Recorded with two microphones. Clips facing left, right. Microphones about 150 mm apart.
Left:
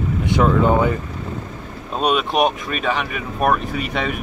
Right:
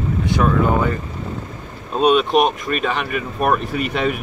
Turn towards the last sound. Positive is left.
turn(degrees=0)  # may be behind; listen again after turning